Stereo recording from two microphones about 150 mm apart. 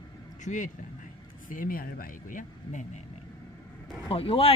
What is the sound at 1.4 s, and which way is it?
Speech, 65° left (ahead or behind).